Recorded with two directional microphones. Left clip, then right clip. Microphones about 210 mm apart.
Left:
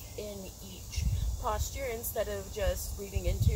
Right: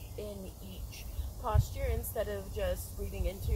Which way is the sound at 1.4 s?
15° left (ahead or behind).